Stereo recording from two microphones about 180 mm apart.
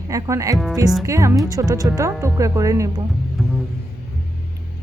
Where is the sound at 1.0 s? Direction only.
15° right (ahead or behind).